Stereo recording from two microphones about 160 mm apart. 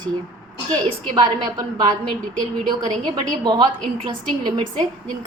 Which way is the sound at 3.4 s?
30° right (ahead or behind).